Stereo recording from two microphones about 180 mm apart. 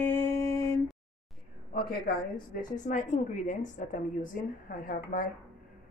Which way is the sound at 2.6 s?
45° left (ahead or behind).